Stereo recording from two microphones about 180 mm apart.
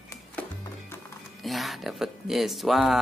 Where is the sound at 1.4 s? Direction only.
Centre (ahead or behind).